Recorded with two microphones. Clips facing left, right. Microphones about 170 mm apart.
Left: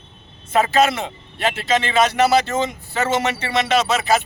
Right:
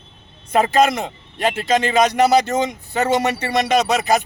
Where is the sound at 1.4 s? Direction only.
15° right (ahead or behind).